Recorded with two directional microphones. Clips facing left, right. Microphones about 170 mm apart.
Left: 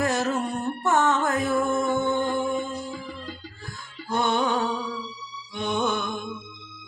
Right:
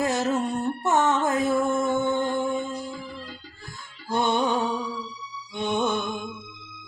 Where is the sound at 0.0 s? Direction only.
20° right (ahead or behind).